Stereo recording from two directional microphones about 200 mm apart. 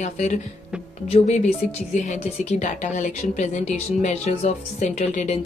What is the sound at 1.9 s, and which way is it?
Speech, 35° left (ahead or behind).